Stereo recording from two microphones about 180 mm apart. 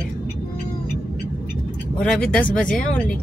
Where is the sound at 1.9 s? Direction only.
5° left (ahead or behind).